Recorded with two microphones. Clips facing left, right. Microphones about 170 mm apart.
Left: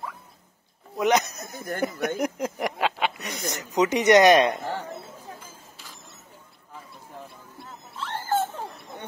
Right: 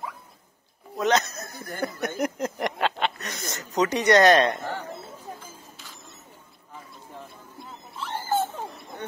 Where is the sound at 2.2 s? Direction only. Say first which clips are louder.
Even; 10° left (ahead or behind).